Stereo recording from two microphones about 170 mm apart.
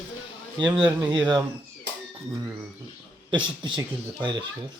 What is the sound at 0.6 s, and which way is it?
Speech, 25° right (ahead or behind).